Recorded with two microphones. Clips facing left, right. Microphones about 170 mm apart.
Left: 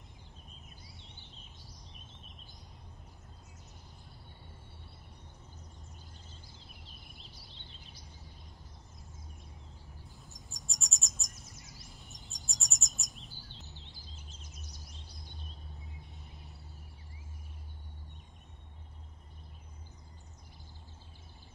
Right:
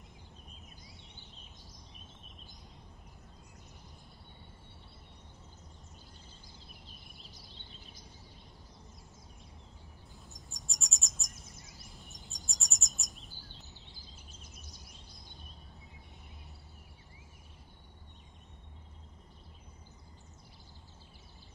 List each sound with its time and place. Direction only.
10.3 s bird: centre (ahead or behind)
12.1 s bird vocalization: centre (ahead or behind)
14.1 s bird: 55° right (ahead or behind)